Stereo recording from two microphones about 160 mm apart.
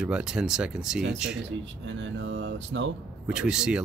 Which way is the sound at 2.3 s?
90° right.